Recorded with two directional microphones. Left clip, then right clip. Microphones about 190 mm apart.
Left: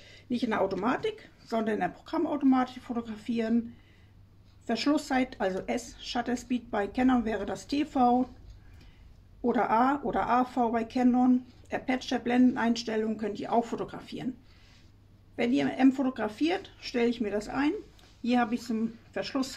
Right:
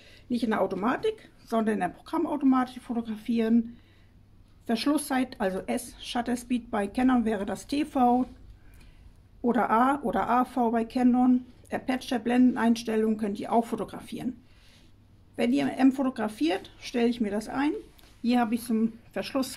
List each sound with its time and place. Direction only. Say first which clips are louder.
0.0 s speech: right 2 dB; 30° right (ahead or behind)
4.6 s speech: right 1 dB; 30° right (ahead or behind)
9.4 s speech: right 2 dB; 35° right (ahead or behind)
15.3 s speech: right 1 dB; 35° right (ahead or behind)